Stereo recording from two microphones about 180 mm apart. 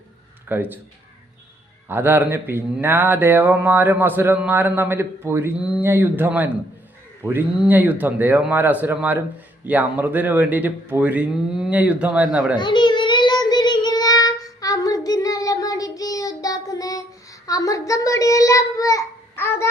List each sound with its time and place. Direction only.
0.4 s speech: 10° right (ahead or behind)
1.9 s speech: 10° right (ahead or behind)
12.5 s child singing: 25° left (ahead or behind)